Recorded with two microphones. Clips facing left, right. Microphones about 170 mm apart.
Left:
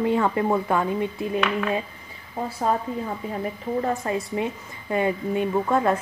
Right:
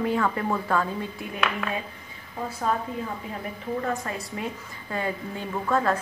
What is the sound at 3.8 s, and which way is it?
A woman's voice, 25° left (ahead or behind).